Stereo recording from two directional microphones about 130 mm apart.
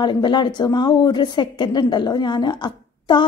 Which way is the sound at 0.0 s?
35° left (ahead or behind).